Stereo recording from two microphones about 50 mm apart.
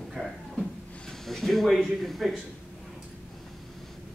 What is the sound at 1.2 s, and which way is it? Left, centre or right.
Speech, centre.